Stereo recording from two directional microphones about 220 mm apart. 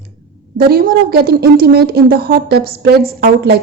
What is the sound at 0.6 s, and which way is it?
A woman's voice, 45° right (ahead or behind).